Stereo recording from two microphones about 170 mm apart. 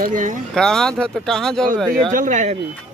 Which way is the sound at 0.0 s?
50° right (ahead or behind).